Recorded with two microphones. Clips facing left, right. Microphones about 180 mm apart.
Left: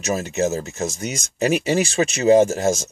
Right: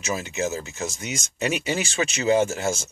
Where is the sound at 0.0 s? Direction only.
40° left (ahead or behind).